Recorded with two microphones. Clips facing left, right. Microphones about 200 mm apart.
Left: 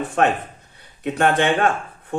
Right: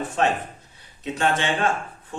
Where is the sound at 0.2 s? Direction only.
55° left (ahead or behind).